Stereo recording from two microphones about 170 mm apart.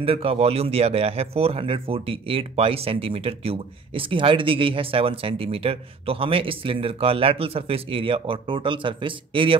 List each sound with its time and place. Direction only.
0.0 s speech: 35° right (ahead or behind)